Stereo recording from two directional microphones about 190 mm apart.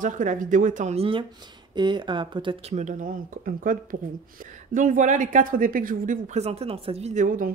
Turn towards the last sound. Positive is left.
turn(degrees=-45)  # may be behind; listen again after turning